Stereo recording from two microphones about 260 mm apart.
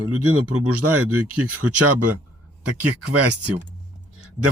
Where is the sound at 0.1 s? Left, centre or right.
Right.